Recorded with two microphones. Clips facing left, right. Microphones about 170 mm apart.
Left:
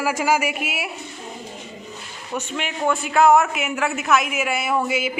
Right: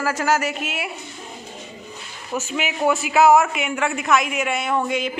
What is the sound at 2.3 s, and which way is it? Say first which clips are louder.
A man's voice: right 2 dB; 5° right (ahead or behind).